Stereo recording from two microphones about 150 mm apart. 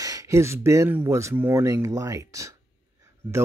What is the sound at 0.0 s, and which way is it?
Speech, 20° right (ahead or behind).